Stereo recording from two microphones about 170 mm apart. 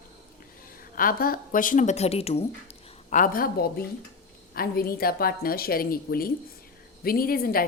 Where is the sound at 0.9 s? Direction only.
55° left (ahead or behind); by 2.4 s 35° left (ahead or behind).